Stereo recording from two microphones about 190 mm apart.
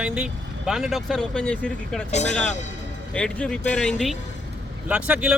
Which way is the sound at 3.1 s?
5° left (ahead or behind).